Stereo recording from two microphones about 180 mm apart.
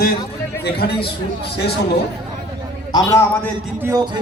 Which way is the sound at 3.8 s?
20° right (ahead or behind).